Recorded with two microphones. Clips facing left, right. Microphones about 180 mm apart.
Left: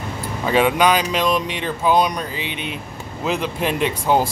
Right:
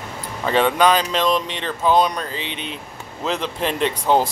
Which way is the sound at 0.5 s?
10° left (ahead or behind).